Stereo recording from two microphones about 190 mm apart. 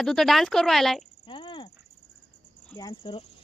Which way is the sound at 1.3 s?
25° left (ahead or behind).